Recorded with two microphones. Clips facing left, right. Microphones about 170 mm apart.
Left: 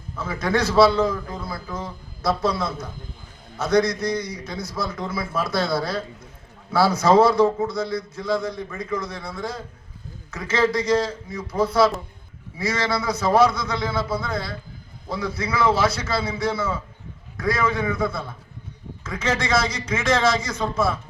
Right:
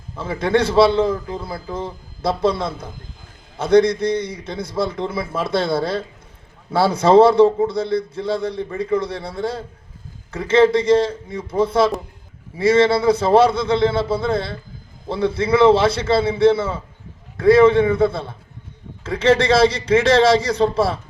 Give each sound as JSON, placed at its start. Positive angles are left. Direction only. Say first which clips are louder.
{"t": 0.2, "sound": "a man's voice", "louder": "right 5 dB", "side_deg": -25}